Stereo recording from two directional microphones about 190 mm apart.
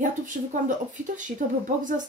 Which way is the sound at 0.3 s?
50° right (ahead or behind).